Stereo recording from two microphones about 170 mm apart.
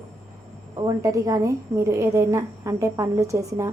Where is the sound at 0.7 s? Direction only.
20° right (ahead or behind).